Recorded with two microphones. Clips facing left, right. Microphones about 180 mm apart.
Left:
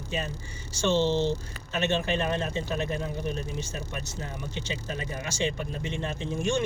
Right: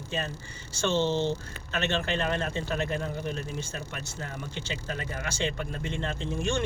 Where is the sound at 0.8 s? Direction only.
15° left (ahead or behind).